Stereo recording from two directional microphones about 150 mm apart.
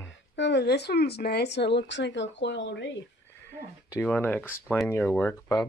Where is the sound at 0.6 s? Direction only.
90° left.